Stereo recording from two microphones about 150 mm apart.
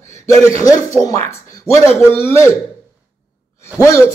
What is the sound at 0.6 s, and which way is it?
Speech, 20° left (ahead or behind).